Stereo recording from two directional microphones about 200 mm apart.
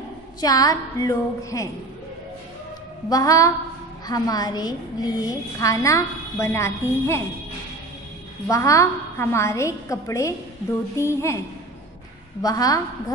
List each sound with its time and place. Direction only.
0.4 s a woman's voice: 20° left (ahead or behind)
3.1 s a woman's voice: 15° left (ahead or behind)
8.5 s a woman's voice: 15° left (ahead or behind)